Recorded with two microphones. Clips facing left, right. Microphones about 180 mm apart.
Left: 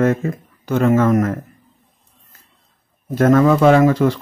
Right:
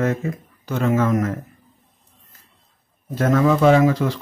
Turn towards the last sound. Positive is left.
turn(degrees=55)  # may be behind; listen again after turning